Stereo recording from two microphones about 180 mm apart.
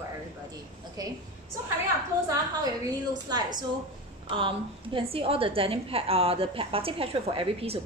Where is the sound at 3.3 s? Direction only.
25° right (ahead or behind).